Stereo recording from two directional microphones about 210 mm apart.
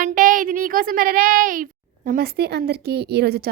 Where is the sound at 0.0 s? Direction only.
40° right (ahead or behind).